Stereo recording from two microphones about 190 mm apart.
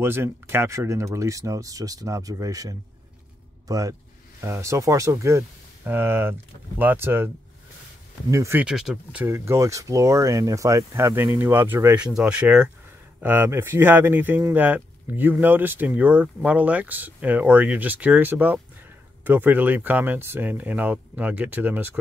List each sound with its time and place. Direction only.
0.0 s speech: 10° right (ahead or behind)
8.3 s speech: 15° right (ahead or behind)